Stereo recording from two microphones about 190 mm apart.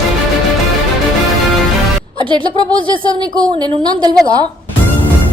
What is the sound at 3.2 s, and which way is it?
Speech, 20° right (ahead or behind).